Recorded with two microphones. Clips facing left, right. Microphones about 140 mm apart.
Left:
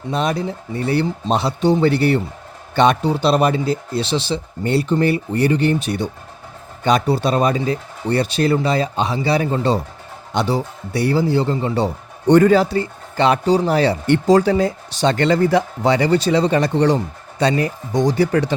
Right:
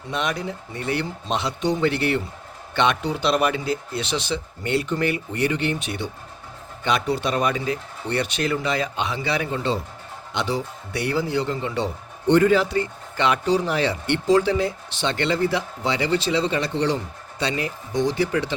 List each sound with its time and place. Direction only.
0.1 s speech: 35° left (ahead or behind)